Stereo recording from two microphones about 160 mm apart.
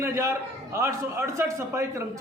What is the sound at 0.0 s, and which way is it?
A man's voice, 15° right (ahead or behind).